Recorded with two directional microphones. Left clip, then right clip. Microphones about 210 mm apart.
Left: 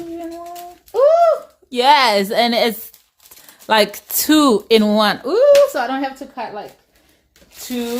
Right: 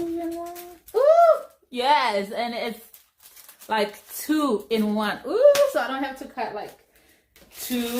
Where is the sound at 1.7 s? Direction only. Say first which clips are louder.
Left 8 dB; 50° left (ahead or behind).